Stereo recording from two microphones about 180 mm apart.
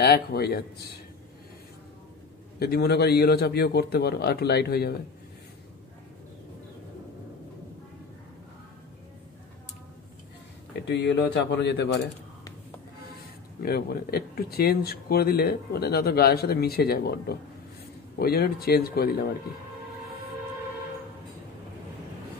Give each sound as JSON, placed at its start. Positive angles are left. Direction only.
{"t": 0.0, "sound": "speech", "side_deg": 60}
{"t": 2.6, "sound": "speech", "side_deg": 60}
{"t": 10.9, "sound": "speech", "side_deg": 70}
{"t": 13.6, "sound": "speech", "side_deg": 60}